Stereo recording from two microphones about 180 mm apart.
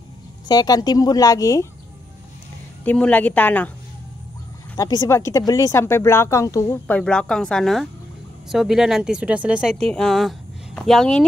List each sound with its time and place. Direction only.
0.5 s speech: 20° left (ahead or behind)
2.8 s speech: 10° left (ahead or behind)
4.7 s speech: 20° left (ahead or behind); by 11.2 s centre (ahead or behind)